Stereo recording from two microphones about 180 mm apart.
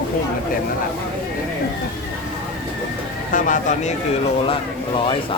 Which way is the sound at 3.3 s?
45° left (ahead or behind).